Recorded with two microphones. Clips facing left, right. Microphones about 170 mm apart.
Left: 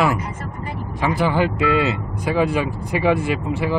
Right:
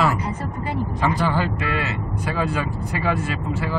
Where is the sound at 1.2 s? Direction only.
15° left (ahead or behind).